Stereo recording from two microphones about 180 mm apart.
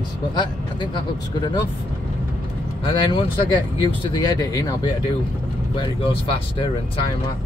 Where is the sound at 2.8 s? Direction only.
25° left (ahead or behind).